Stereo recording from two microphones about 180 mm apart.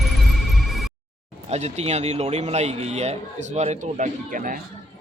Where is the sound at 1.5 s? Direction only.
35° right (ahead or behind).